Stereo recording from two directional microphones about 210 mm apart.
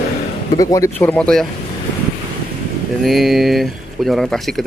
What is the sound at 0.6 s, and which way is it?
Speech, 15° left (ahead or behind).